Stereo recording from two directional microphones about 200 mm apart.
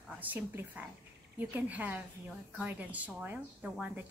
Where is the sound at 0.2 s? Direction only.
10° right (ahead or behind).